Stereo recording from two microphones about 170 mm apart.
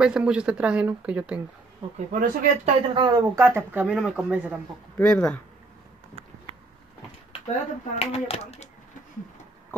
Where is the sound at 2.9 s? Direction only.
25° right (ahead or behind).